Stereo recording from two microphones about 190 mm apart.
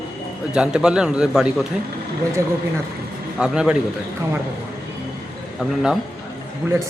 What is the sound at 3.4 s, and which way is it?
Speech, 5° right (ahead or behind).